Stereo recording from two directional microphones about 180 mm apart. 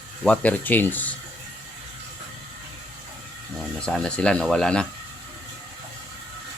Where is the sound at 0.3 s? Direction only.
10° left (ahead or behind).